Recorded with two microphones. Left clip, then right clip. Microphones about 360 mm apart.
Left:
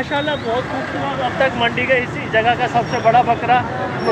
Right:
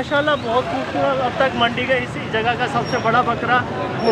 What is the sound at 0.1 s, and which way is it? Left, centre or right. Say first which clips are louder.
Speech: right 4 dB; centre.